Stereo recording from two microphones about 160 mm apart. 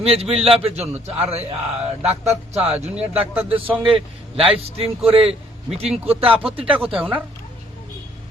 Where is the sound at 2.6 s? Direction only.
40° right (ahead or behind).